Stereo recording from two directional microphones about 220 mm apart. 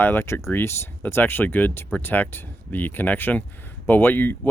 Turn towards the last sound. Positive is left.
turn(degrees=10)  # may be behind; listen again after turning